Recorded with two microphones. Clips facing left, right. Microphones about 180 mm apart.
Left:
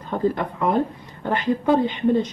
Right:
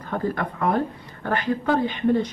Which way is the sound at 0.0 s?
20° left (ahead or behind).